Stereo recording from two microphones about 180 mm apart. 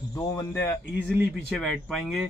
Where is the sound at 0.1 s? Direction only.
15° left (ahead or behind).